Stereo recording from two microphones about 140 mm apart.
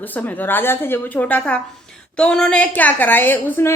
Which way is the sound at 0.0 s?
10° left (ahead or behind).